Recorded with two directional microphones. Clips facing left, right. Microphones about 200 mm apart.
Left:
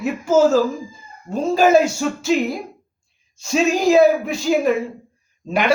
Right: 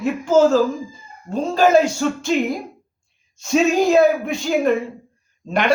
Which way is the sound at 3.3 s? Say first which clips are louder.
Right 2 dB; centre (ahead or behind).